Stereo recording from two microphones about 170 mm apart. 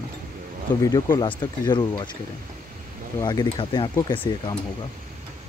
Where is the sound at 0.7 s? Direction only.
10° left (ahead or behind).